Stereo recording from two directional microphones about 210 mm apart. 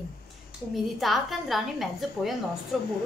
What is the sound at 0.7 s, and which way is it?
A woman's voice, centre (ahead or behind).